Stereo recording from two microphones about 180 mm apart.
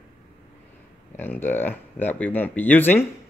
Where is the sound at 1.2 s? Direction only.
10° left (ahead or behind).